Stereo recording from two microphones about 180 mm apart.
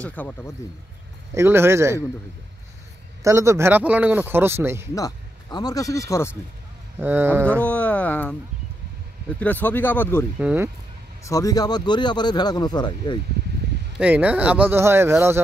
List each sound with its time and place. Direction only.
0.0 s speech: 10° left (ahead or behind)
1.3 s speech: 15° right (ahead or behind)
3.3 s speech: 15° right (ahead or behind)
4.9 s speech: 20° left (ahead or behind)
7.0 s speech: 10° right (ahead or behind)
7.4 s a sound: 10° left (ahead or behind)
9.4 s speech: 10° left (ahead or behind)
10.4 s speech: 10° right (ahead or behind)
11.2 s speech: 20° left (ahead or behind)
13.9 s speech: 10° right (ahead or behind)